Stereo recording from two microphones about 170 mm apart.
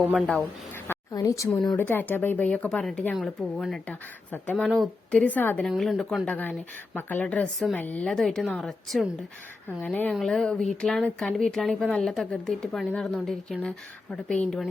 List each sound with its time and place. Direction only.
0.0 s speech: 5° right (ahead or behind)
0.3 s a woman's voice: 10° left (ahead or behind)